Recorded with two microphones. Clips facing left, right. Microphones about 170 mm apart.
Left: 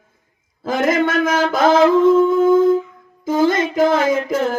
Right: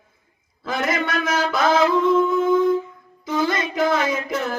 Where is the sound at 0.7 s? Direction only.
50° left (ahead or behind).